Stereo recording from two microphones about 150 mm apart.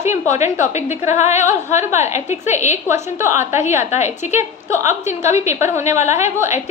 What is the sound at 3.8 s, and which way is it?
Speech, 50° left (ahead or behind).